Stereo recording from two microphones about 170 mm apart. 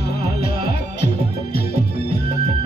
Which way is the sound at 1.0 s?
75° left (ahead or behind).